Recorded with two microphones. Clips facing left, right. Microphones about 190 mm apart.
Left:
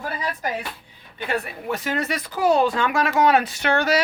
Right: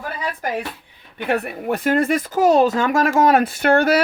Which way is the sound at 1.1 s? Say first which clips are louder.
Right 5 dB; 60° right (ahead or behind).